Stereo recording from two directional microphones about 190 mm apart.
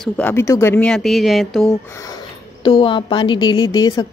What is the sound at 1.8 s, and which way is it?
A woman's voice, 15° left (ahead or behind).